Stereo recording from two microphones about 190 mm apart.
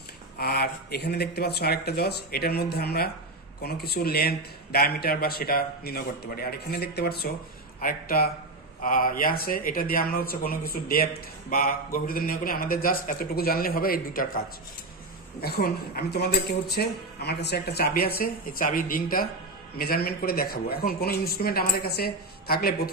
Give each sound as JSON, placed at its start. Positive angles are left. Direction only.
{"t": 0.4, "sound": "speech", "side_deg": 55}
{"t": 15.4, "sound": "speech", "side_deg": 55}